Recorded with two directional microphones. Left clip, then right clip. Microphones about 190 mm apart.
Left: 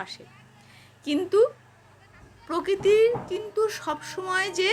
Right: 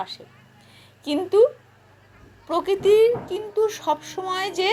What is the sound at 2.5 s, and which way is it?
Speech, 10° left (ahead or behind).